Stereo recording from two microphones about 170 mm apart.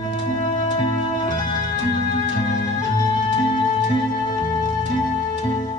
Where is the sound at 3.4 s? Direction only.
30° left (ahead or behind).